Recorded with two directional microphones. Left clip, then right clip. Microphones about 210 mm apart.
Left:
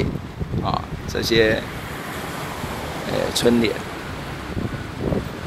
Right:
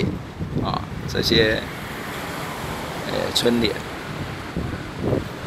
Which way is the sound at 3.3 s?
15° left (ahead or behind).